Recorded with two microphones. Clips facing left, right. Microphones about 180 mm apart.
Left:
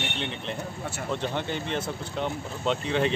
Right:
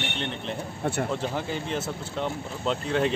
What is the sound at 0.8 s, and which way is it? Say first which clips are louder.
Speech: right 7 dB; 55° right (ahead or behind).